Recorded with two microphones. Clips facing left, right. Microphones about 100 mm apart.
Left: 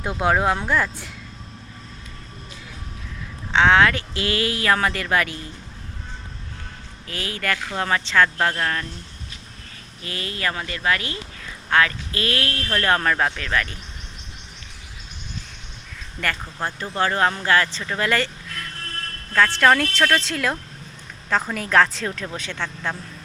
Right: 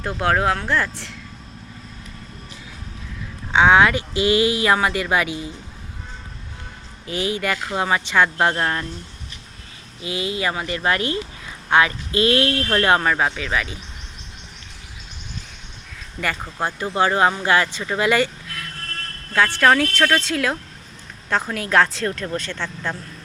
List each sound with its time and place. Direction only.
0.0 s speech: 5° left (ahead or behind)
3.5 s speech: 10° right (ahead or behind)
7.1 s speech: 20° right (ahead or behind)
10.0 s speech: 10° right (ahead or behind)
13.0 s speech: 5° right (ahead or behind)
16.2 s speech: 10° right (ahead or behind)